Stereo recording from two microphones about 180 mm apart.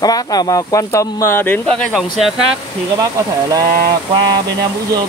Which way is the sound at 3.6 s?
50° right (ahead or behind).